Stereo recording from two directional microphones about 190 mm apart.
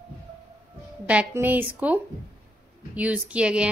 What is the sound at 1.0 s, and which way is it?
A woman's voice, 10° right (ahead or behind).